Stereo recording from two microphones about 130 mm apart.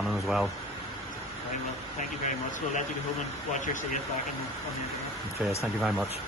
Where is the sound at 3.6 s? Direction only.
80° left.